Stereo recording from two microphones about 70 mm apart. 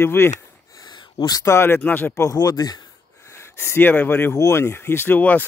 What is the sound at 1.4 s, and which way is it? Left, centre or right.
Speech, left.